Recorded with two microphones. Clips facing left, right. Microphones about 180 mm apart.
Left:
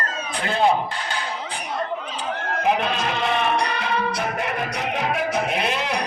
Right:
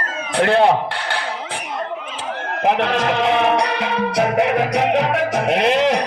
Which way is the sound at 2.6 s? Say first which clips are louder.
Right 5 dB; 80° right.